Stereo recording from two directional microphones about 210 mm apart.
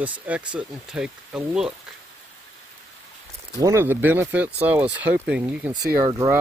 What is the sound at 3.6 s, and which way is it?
Speech, 15° right (ahead or behind).